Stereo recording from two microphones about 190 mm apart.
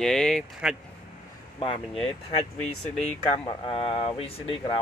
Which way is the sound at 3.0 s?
30° left (ahead or behind).